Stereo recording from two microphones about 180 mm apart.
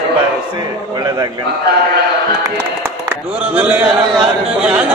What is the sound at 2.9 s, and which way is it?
Speech, 5° right (ahead or behind).